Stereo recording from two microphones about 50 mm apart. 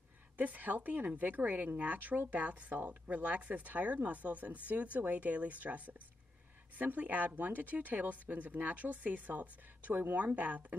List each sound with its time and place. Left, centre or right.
0.4 s speech: right